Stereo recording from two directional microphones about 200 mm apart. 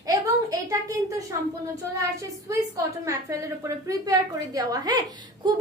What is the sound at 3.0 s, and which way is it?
A woman's voice, 15° right (ahead or behind).